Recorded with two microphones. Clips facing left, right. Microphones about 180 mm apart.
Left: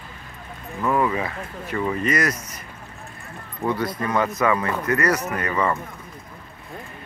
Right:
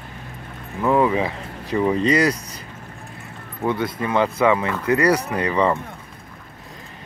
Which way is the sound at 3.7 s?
25° right (ahead or behind).